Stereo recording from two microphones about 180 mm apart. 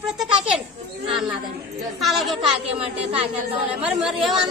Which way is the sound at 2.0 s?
Centre (ahead or behind).